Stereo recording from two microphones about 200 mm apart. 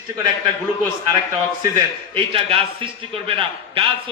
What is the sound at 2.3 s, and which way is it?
A man's voice, 25° right (ahead or behind).